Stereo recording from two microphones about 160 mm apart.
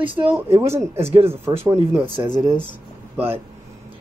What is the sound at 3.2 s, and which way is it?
Speech, 15° right (ahead or behind).